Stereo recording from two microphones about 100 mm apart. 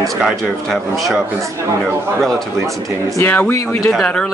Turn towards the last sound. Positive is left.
turn(degrees=5)  # may be behind; listen again after turning